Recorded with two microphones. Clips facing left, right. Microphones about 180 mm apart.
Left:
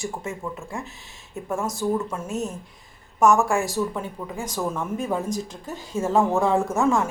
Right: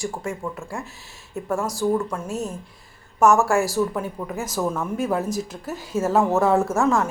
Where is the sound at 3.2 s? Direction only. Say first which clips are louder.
Right 2 dB; centre (ahead or behind).